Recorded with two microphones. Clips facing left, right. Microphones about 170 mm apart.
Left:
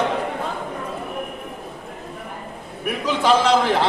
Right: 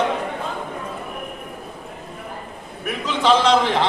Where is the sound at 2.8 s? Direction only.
10° left (ahead or behind).